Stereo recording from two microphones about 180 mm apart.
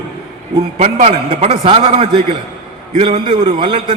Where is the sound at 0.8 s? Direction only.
40° right (ahead or behind).